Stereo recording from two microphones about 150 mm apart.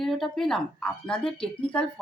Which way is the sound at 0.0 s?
Centre (ahead or behind).